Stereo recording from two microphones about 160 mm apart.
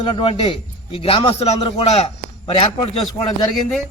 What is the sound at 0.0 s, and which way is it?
A man's voice, 30° left (ahead or behind).